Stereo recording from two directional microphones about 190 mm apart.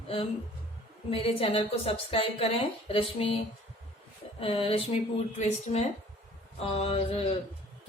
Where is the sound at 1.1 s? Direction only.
30° left (ahead or behind).